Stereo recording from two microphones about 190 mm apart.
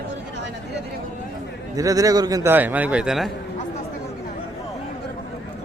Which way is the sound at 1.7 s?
20° right (ahead or behind).